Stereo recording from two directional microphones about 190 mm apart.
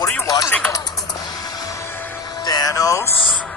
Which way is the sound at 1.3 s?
20° left (ahead or behind).